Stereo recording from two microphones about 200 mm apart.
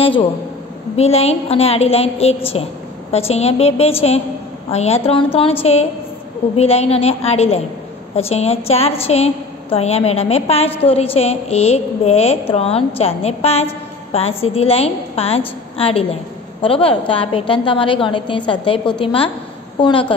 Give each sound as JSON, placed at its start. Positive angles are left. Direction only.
{"t": 0.0, "sound": "a woman's voice", "side_deg": 25}